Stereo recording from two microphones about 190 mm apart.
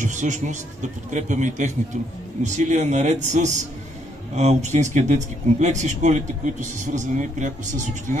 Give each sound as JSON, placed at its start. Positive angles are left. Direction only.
{"t": 0.0, "sound": "speech", "side_deg": -40}